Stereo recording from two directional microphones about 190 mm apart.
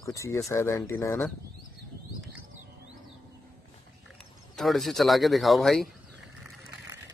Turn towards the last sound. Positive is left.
turn(degrees=0)  # may be behind; listen again after turning